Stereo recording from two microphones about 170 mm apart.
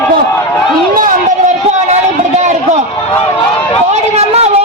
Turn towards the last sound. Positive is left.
turn(degrees=-40)  # may be behind; listen again after turning